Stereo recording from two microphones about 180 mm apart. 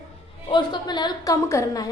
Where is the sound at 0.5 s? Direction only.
25° left (ahead or behind).